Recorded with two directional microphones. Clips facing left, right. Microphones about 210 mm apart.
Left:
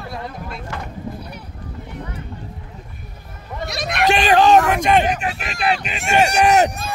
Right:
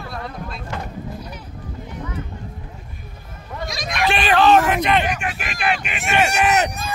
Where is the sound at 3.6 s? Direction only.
65° left (ahead or behind).